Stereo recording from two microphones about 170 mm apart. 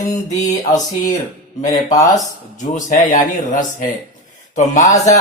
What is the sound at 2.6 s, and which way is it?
Speech, 45° left (ahead or behind).